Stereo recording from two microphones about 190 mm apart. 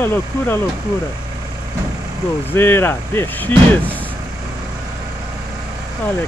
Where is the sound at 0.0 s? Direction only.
10° left (ahead or behind).